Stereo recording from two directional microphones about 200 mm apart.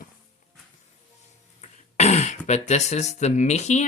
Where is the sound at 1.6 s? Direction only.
35° left (ahead or behind).